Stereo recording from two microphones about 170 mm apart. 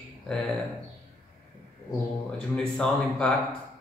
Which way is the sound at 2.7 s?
5° left (ahead or behind).